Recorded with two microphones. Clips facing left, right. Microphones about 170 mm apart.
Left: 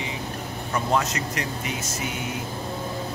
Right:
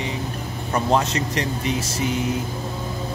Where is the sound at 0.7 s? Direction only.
30° right (ahead or behind).